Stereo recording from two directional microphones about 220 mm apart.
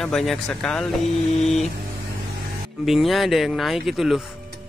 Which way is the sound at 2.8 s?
Centre (ahead or behind).